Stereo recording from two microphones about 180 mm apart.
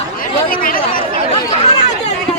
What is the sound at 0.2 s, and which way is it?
Chatter, 50° left (ahead or behind).